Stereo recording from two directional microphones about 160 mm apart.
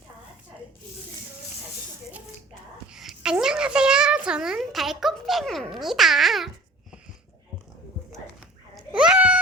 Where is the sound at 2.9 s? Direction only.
5° right (ahead or behind).